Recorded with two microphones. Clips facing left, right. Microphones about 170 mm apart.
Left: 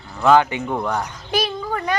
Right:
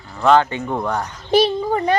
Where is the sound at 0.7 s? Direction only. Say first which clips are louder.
Right 1 dB; 10° right (ahead or behind).